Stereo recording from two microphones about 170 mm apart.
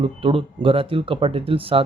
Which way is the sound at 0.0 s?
30° right (ahead or behind).